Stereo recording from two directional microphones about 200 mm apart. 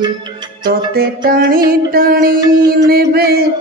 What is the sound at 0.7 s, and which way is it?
Mantra, 50° right (ahead or behind).